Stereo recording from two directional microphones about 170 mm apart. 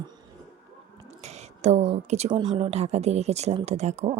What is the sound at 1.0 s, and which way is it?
Whispering, 40° right (ahead or behind).